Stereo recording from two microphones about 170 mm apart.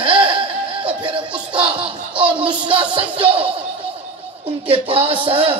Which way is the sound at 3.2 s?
35° right (ahead or behind).